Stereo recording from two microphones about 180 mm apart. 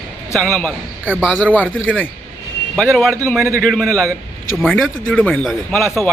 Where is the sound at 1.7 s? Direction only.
90° left.